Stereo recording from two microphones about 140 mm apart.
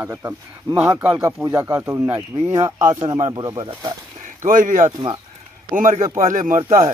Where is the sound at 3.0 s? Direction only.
35° right (ahead or behind).